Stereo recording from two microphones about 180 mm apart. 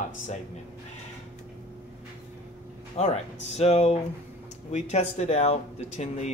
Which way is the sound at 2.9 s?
35° left (ahead or behind).